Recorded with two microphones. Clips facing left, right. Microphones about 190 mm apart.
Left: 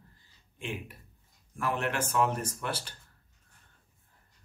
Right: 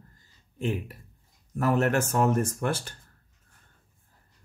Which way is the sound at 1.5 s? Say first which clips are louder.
Right 8 dB; 40° right (ahead or behind).